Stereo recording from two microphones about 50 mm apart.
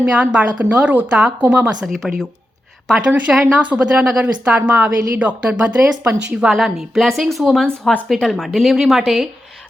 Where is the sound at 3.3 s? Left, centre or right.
Centre.